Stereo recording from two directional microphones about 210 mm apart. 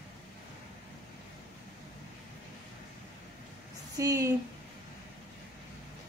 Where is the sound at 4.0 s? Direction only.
15° right (ahead or behind).